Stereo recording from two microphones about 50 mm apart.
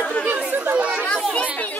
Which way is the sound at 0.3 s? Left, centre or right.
Right.